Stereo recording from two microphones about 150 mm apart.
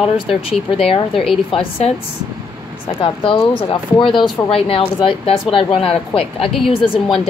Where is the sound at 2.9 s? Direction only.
35° left (ahead or behind).